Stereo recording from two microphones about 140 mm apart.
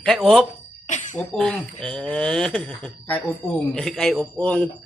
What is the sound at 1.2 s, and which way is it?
Speech, 5° left (ahead or behind).